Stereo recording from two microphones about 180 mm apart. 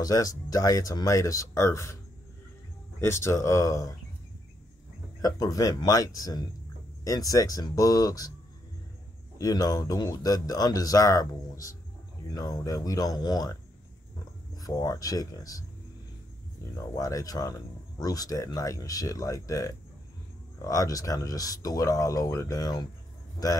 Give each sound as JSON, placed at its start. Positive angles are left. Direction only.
{"t": 0.0, "sound": "speech", "side_deg": 20}
{"t": 3.0, "sound": "speech", "side_deg": 15}
{"t": 5.2, "sound": "speech", "side_deg": 20}
{"t": 9.4, "sound": "speech", "side_deg": 20}
{"t": 14.6, "sound": "speech", "side_deg": 20}
{"t": 16.7, "sound": "speech", "side_deg": 20}